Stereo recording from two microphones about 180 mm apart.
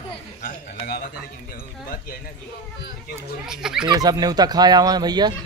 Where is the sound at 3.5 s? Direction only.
5° right (ahead or behind).